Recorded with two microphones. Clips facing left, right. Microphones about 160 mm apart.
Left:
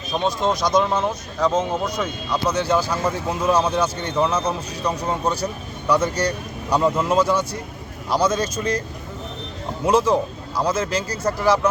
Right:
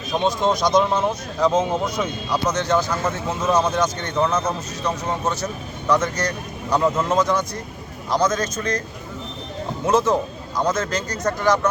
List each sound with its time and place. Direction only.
0.1 s speech: 15° right (ahead or behind)
0.8 s speech: 5° right (ahead or behind)
2.5 s speech: 10° left (ahead or behind)
9.8 s speech: 10° left (ahead or behind)